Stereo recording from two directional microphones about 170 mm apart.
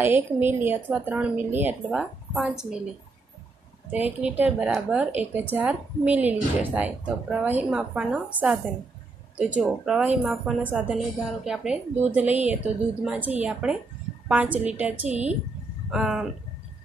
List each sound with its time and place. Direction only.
0.0 s a woman's voice: 10° right (ahead or behind)
3.9 s a woman's voice: 10° right (ahead or behind)
15.0 s speech: 40° right (ahead or behind)
15.9 s speech: 5° right (ahead or behind)